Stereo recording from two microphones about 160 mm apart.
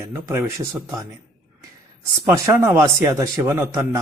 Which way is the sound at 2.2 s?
15° right (ahead or behind).